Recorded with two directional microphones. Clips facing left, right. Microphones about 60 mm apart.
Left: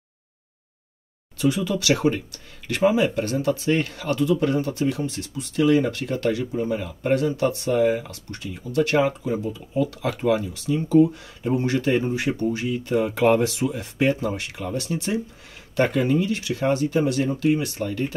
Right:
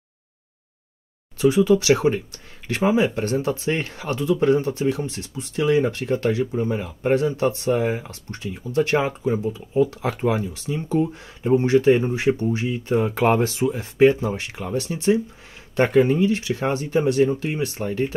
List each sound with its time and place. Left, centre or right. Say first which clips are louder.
1.4 s speech: right 6 dB; right